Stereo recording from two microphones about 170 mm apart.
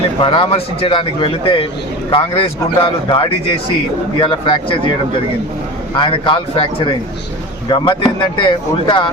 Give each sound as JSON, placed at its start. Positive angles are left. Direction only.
{"t": 0.2, "sound": "speech", "side_deg": 30}
{"t": 5.9, "sound": "speech", "side_deg": 30}